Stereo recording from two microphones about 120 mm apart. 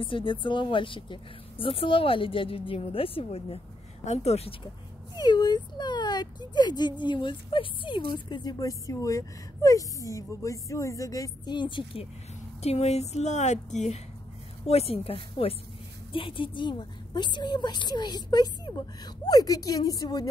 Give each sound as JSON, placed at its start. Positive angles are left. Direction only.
{"t": 0.0, "sound": "speech", "side_deg": 45}
{"t": 5.1, "sound": "speech", "side_deg": 35}
{"t": 12.6, "sound": "a woman's voice", "side_deg": 60}
{"t": 14.7, "sound": "speech", "side_deg": 55}